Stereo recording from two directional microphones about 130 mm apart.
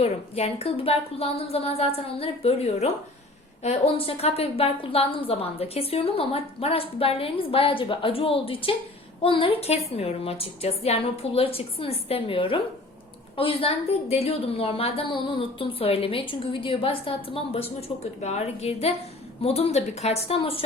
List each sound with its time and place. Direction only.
0.0 s a woman's voice: 50° left (ahead or behind)